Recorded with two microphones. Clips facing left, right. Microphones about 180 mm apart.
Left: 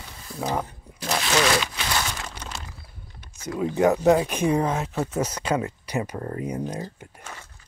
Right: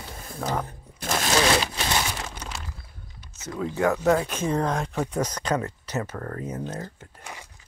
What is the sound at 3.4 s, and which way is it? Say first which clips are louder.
Speech: left 4 dB; 15° left (ahead or behind).